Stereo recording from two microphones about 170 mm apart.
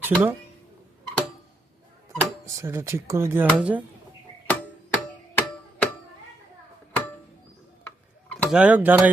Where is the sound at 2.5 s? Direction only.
15° right (ahead or behind).